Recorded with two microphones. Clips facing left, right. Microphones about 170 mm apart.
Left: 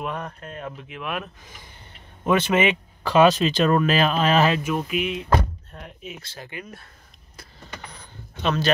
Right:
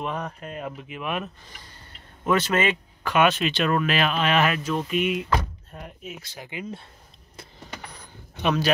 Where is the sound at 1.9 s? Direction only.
15° left (ahead or behind).